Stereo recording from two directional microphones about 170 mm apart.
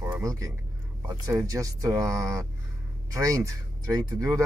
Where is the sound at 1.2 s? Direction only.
20° right (ahead or behind).